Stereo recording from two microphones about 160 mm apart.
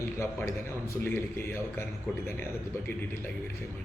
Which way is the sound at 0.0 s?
15° left (ahead or behind).